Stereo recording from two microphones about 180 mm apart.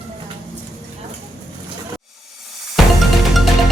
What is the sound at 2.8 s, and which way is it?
Music, centre (ahead or behind).